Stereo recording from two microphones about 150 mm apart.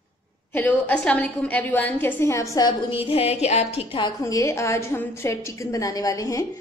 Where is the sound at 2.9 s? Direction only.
40° left (ahead or behind).